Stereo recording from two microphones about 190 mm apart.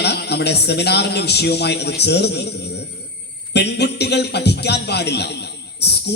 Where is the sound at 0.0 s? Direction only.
60° left (ahead or behind).